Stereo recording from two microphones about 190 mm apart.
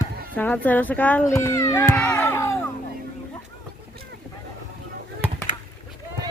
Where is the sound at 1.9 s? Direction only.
5° left (ahead or behind).